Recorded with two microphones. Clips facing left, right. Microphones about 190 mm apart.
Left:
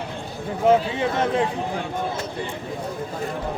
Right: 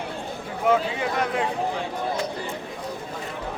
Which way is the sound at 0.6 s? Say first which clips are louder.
Left 4 dB; 25° left (ahead or behind).